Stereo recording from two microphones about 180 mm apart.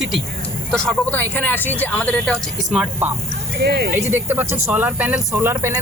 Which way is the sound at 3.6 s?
65° right (ahead or behind).